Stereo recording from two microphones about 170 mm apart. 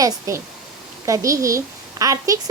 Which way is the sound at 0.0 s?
15° right (ahead or behind).